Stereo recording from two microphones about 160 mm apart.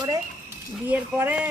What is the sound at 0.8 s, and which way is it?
Speech, 10° right (ahead or behind).